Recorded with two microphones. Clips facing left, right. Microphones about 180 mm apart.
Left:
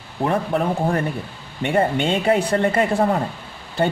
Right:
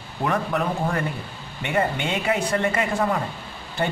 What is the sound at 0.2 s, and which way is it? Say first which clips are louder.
Speech: left 3 dB; 30° left (ahead or behind).